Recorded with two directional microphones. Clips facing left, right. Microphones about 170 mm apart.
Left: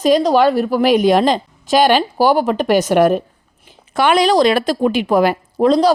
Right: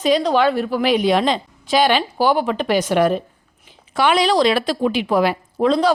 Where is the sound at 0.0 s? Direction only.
40° left (ahead or behind).